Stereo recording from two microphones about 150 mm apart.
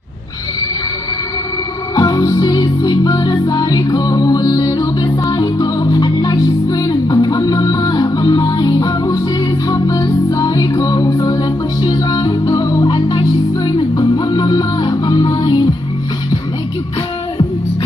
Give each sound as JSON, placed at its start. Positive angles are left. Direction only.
{"t": 2.0, "sound": "music", "side_deg": 25}